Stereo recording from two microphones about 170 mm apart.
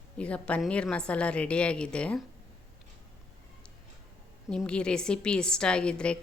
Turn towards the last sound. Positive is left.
turn(degrees=5)  # may be behind; listen again after turning